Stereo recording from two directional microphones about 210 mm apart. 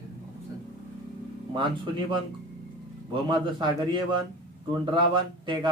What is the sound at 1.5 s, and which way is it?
Speech, 20° right (ahead or behind).